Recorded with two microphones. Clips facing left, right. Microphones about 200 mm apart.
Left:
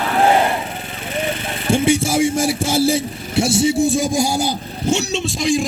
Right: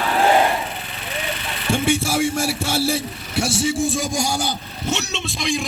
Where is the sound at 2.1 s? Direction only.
20° left (ahead or behind); by 5.5 s 35° left (ahead or behind).